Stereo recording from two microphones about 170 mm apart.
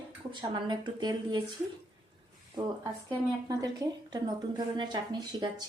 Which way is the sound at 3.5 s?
20° right (ahead or behind).